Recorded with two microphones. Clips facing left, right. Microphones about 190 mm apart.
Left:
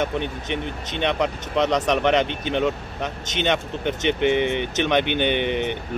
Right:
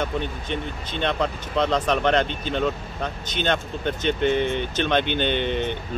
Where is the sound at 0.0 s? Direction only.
20° left (ahead or behind).